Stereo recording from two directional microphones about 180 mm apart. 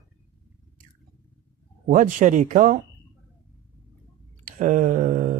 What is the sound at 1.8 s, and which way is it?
Speech, 45° right (ahead or behind).